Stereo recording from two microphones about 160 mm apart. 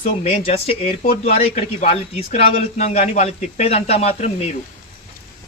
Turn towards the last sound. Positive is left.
turn(degrees=40)  # may be behind; listen again after turning